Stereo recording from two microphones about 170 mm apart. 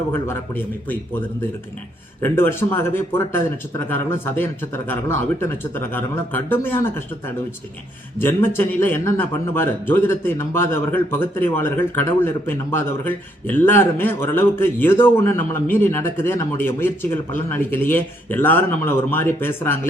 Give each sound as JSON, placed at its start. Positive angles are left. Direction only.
{"t": 0.1, "sound": "a man's voice", "side_deg": 15}